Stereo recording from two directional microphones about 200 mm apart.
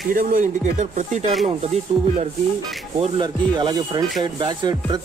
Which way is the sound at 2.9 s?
25° right (ahead or behind).